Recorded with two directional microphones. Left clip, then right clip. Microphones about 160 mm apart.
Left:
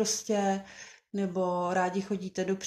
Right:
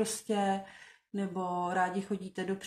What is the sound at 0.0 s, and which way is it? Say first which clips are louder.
Speech: left 3 dB; 35° left (ahead or behind).